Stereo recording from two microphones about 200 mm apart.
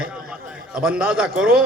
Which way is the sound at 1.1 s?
5° right (ahead or behind).